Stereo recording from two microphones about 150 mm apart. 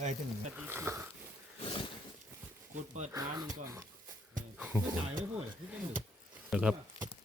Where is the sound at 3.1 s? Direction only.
20° right (ahead or behind).